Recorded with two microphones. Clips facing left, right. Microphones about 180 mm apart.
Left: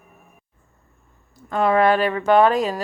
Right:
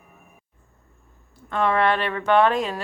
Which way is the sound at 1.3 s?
5° left (ahead or behind).